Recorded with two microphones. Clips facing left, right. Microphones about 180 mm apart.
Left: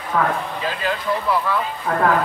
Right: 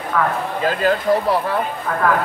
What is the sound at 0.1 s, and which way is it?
Speech, 25° left (ahead or behind).